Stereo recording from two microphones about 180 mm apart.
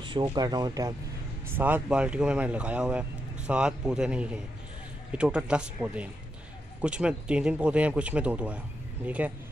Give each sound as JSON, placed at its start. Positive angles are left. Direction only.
{"t": 0.0, "sound": "speech", "side_deg": -25}
{"t": 1.5, "sound": "speech", "side_deg": -10}